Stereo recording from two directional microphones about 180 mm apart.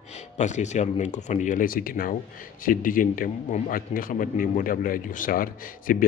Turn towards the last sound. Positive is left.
turn(degrees=50)  # may be behind; listen again after turning